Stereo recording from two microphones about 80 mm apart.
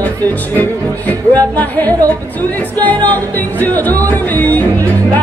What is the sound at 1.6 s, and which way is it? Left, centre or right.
Music, left.